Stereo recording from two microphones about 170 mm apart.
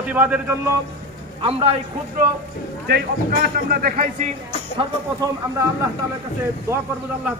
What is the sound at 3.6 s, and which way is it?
Speech, 60° right (ahead or behind).